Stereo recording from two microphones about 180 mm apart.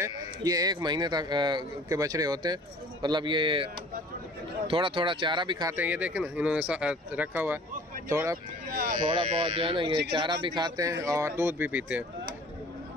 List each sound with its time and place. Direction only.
0.0 s speech: 20° right (ahead or behind)
5.8 s speech: 10° right (ahead or behind)
8.7 s speech: 55° right (ahead or behind)
9.0 s speech: 35° right (ahead or behind); by 12.0 s 10° right (ahead or behind)